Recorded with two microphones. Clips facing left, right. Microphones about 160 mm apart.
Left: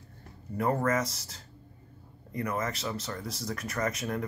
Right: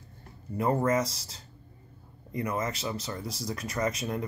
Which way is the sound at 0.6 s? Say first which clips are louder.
Right 2 dB; 15° right (ahead or behind).